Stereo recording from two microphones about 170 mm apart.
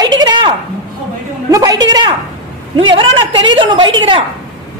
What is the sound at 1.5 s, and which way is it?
A woman's voice, 20° right (ahead or behind).